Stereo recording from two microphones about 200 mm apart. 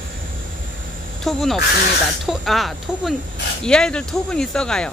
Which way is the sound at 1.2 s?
Centre (ahead or behind).